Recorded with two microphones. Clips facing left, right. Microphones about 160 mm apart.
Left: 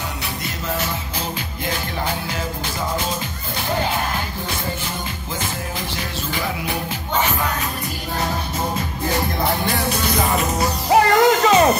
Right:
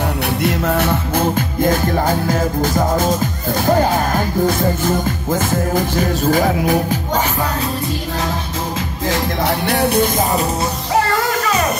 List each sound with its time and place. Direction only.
0.4 s speech: 60° right (ahead or behind); by 7.2 s 45° right (ahead or behind)
9.1 s music: 75° right (ahead or behind); by 10.5 s 40° right (ahead or behind)
11.1 s music: 20° left (ahead or behind)